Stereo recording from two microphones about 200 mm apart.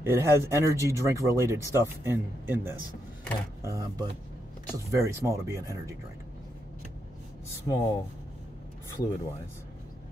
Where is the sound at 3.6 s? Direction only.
15° right (ahead or behind).